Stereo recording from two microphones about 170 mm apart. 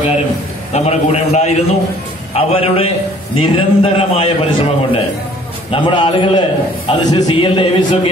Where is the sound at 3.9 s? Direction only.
35° left (ahead or behind).